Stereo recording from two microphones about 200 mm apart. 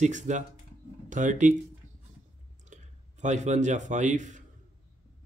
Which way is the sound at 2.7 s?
40° right (ahead or behind).